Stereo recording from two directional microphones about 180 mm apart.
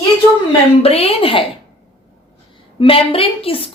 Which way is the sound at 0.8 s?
35° left (ahead or behind).